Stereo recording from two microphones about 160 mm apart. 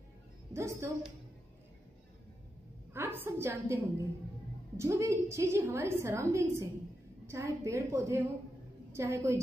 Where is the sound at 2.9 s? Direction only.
15° right (ahead or behind).